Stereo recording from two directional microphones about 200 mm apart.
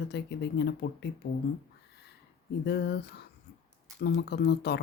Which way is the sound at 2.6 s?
55° left (ahead or behind).